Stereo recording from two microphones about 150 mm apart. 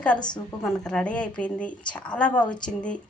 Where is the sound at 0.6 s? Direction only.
5° left (ahead or behind).